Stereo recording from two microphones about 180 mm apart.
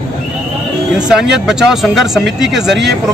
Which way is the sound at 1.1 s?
5° right (ahead or behind).